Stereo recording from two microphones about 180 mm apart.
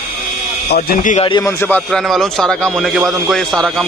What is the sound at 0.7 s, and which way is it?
Speech, 45° left (ahead or behind).